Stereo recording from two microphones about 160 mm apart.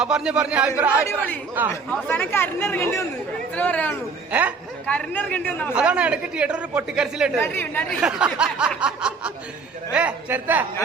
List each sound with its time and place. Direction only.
0.0 s speech: 5° right (ahead or behind)
1.0 s speech: 10° left (ahead or behind)
1.6 s speech: 10° right (ahead or behind)
1.9 s speech: 10° left (ahead or behind)
4.3 s speech: 10° right (ahead or behind)
4.9 s speech: 10° left (ahead or behind)
5.7 s speech: 5° right (ahead or behind)
7.3 s speech: 15° left (ahead or behind)
8.0 s speech: 5° right (ahead or behind)